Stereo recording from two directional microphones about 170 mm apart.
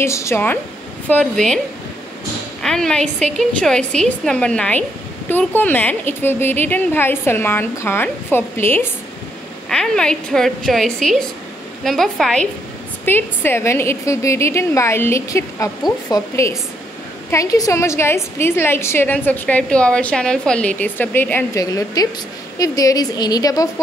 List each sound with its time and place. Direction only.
0.0 s a woman's voice: 15° left (ahead or behind)
2.6 s a woman's voice: 5° left (ahead or behind); by 23.7 s 20° left (ahead or behind)